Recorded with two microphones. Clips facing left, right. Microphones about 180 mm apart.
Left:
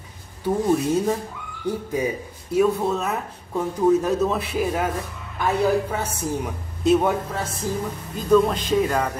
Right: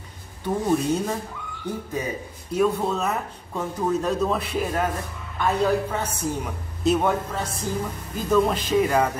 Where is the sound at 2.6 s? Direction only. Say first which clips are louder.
Left 2 dB; 5° left (ahead or behind).